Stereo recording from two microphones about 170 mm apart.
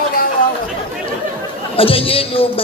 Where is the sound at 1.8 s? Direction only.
35° left (ahead or behind).